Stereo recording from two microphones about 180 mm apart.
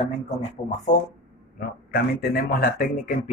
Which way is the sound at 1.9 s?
60° left (ahead or behind).